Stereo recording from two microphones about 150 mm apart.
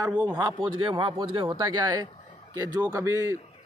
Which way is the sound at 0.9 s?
35° right (ahead or behind).